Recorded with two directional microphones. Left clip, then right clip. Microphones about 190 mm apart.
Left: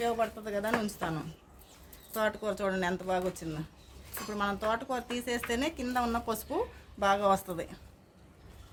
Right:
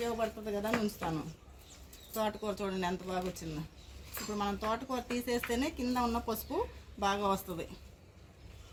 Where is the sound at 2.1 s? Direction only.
40° left (ahead or behind).